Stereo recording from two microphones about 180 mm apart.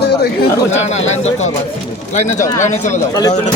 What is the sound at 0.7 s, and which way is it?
Speech, 40° left (ahead or behind).